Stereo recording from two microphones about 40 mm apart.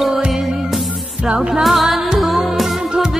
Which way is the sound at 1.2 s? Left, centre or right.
Right.